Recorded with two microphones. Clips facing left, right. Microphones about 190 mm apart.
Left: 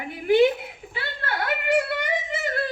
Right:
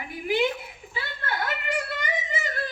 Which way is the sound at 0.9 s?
60° left (ahead or behind).